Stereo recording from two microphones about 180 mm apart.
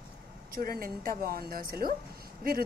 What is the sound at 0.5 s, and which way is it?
Speech, 55° right (ahead or behind).